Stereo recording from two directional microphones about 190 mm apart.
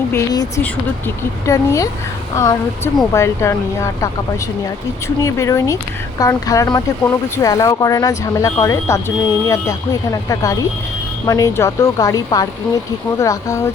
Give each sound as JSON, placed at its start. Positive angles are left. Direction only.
{"t": 0.1, "sound": "speech", "side_deg": 20}